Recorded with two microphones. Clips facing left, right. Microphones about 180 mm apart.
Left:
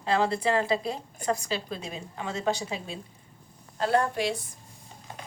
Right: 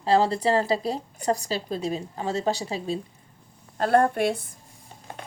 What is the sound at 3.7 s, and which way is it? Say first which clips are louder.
Speech: right 5 dB; 50° right (ahead or behind).